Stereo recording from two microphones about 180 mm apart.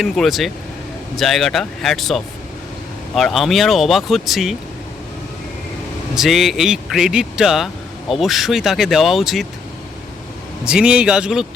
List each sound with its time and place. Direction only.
0.0 s a man's voice: centre (ahead or behind)
6.1 s a man's voice: centre (ahead or behind)
10.7 s a man's voice: 5° right (ahead or behind)